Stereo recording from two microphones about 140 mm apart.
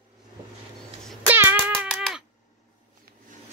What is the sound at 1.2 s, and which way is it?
Music, 15° right (ahead or behind).